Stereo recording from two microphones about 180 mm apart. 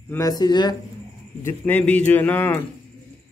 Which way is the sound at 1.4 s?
10° left (ahead or behind).